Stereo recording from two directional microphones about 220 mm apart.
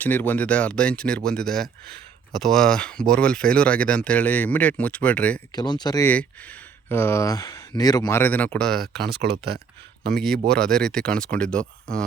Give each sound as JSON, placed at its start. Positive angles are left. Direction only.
{"t": 0.0, "sound": "speech", "side_deg": 10}
{"t": 5.5, "sound": "speech", "side_deg": 20}
{"t": 9.0, "sound": "speech", "side_deg": -45}
{"t": 10.5, "sound": "speech", "side_deg": 5}